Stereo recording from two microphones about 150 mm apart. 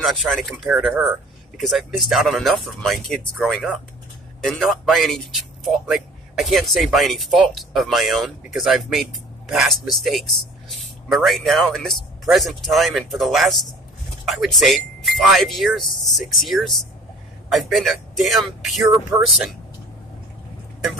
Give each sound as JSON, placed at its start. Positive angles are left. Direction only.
{"t": 0.0, "sound": "a man's voice", "side_deg": 0}